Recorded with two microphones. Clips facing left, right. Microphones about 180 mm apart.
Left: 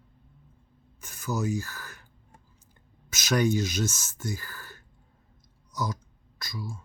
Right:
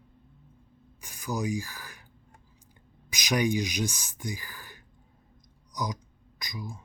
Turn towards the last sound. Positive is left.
turn(degrees=-15)  # may be behind; listen again after turning